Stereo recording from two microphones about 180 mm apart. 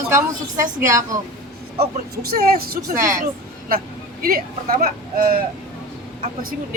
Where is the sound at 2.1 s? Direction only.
55° right (ahead or behind).